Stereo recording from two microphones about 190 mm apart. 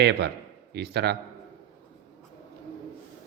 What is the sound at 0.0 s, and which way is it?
Speech, 60° right (ahead or behind).